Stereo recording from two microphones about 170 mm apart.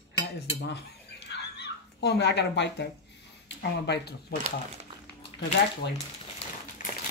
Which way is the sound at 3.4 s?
80° left.